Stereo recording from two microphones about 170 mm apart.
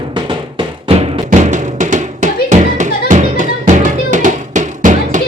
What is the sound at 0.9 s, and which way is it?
Music, 35° right (ahead or behind).